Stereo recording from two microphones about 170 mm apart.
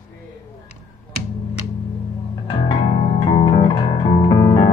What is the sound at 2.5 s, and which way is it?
Music, 30° left (ahead or behind).